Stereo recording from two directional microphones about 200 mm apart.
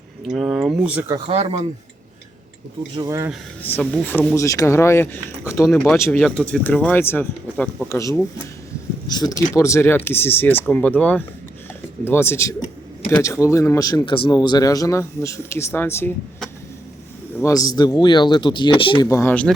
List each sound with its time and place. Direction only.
0.3 s speech: centre (ahead or behind)
1.3 s speech: 30° right (ahead or behind)
2.9 s speech: 20° right (ahead or behind)
3.6 s speech: 10° left (ahead or behind)
5.6 s speech: 5° left (ahead or behind)
17.4 s speech: 15° left (ahead or behind)
19.0 s speech: 10° left (ahead or behind)